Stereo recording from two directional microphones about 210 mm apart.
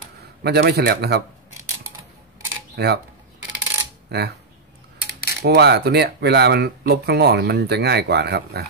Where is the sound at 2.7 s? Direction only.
50° right (ahead or behind).